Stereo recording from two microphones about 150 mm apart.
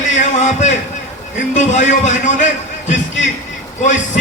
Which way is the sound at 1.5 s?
55° left (ahead or behind).